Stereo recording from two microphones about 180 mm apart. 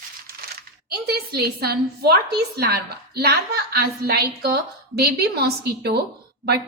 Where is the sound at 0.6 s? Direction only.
60° right (ahead or behind).